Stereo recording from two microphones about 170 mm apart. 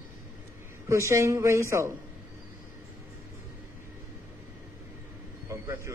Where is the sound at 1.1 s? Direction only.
15° right (ahead or behind).